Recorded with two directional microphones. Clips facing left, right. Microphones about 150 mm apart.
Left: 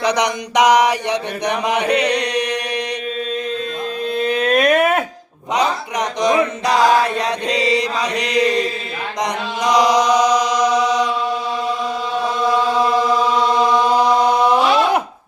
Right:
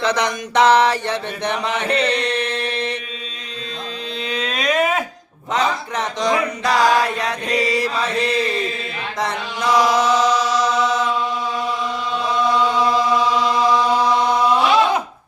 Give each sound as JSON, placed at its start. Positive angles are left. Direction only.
{"t": 0.0, "sound": "speech", "side_deg": 15}
{"t": 4.2, "sound": "a sound", "side_deg": 50}
{"t": 5.5, "sound": "a capella", "side_deg": 20}
{"t": 9.2, "sound": "chant", "side_deg": 20}